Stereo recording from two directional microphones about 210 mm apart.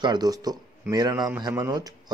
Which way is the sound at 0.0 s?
20° right (ahead or behind).